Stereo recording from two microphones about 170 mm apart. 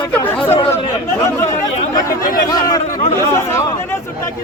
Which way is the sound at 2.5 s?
20° left (ahead or behind).